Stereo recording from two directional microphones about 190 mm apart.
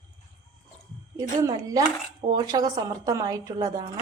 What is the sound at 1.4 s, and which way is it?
Speech, 20° right (ahead or behind).